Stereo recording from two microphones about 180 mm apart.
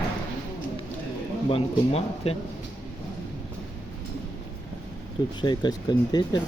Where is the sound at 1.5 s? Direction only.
35° left (ahead or behind).